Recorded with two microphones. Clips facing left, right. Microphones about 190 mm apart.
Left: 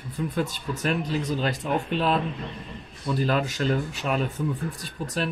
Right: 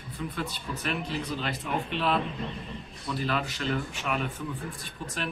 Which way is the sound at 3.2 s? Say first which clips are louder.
Left 6 dB; 45° left (ahead or behind).